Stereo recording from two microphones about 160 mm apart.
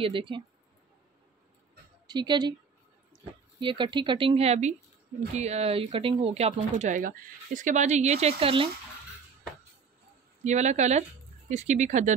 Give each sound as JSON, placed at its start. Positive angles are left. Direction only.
{"t": 0.0, "sound": "speech", "side_deg": -30}
{"t": 2.0, "sound": "speech", "side_deg": -25}
{"t": 10.4, "sound": "speech", "side_deg": -45}